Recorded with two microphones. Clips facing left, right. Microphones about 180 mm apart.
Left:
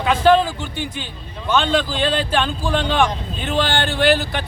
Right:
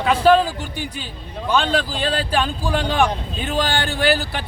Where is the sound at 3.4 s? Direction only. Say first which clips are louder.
Left 2 dB; 40° right (ahead or behind).